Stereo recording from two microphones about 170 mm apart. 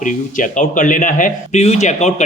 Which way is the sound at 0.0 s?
50° left (ahead or behind).